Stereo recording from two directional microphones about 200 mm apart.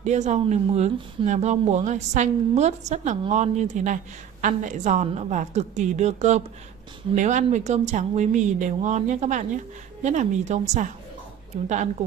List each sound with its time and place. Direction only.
0.0 s speech: 35° right (ahead or behind)